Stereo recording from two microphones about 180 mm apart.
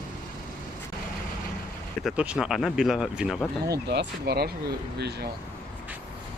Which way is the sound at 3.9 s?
65° right (ahead or behind).